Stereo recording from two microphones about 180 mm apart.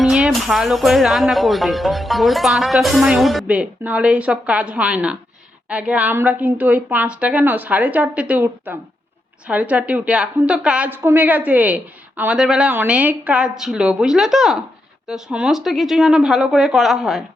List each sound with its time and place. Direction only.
0.0 s a woman's voice: centre (ahead or behind)